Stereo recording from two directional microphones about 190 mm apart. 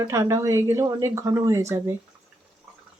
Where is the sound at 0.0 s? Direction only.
15° right (ahead or behind).